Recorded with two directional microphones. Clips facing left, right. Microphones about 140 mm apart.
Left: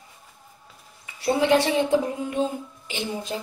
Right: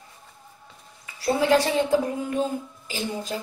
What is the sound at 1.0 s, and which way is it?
Speech, 25° left (ahead or behind).